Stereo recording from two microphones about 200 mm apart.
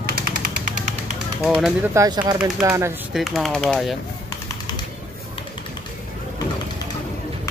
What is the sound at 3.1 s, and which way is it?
Speech, centre (ahead or behind).